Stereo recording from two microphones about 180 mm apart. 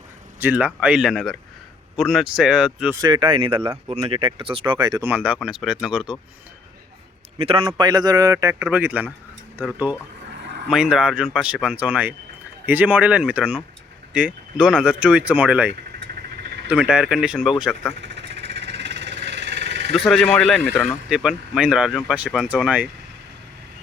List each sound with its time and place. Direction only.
0.3 s speech: 10° right (ahead or behind)
2.9 s speech: 25° right (ahead or behind)
5.0 s speech: 10° right (ahead or behind)
7.3 s a man's voice: 30° right (ahead or behind); by 17.9 s centre (ahead or behind)
18.0 s engine: 75° right (ahead or behind)
19.9 s speech: centre (ahead or behind)
20.7 s speech: centre (ahead or behind)